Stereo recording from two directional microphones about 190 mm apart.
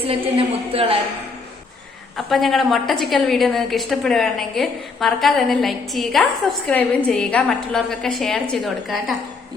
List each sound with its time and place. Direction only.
0.1 s a woman's voice: 30° right (ahead or behind)
2.1 s a woman's voice: centre (ahead or behind)